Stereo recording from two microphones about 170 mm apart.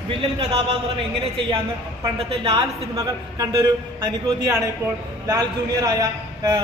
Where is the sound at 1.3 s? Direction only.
30° right (ahead or behind).